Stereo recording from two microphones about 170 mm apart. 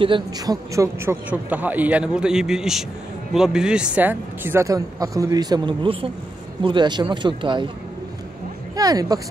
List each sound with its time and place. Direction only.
0.0 s a woman's voice: 30° right (ahead or behind)
0.7 s a man's voice: 10° right (ahead or behind); by 7.6 s 25° right (ahead or behind)
8.7 s speech: 20° right (ahead or behind)